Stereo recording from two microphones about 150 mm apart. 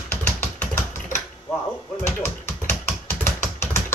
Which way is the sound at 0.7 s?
20° left (ahead or behind).